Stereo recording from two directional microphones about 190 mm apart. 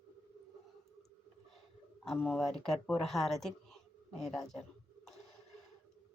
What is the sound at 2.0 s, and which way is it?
Speech, centre (ahead or behind).